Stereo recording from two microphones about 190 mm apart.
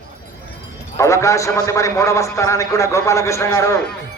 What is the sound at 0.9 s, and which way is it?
A man's voice, 15° left (ahead or behind).